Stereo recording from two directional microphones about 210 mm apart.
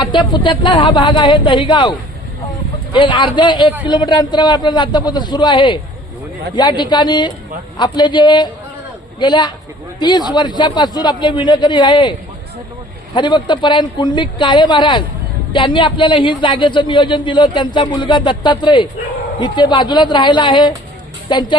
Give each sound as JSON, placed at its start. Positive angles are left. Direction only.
{"t": 0.0, "sound": "speech", "side_deg": 20}
{"t": 13.1, "sound": "speech", "side_deg": 20}